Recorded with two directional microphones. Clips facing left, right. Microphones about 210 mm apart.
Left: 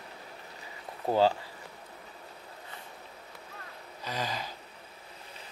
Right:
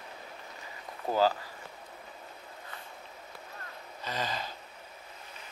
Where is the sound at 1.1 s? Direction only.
25° left (ahead or behind).